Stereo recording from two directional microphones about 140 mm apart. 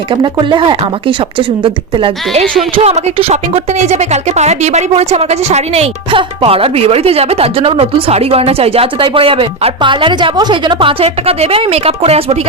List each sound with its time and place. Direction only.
0.1 s speech: 35° right (ahead or behind)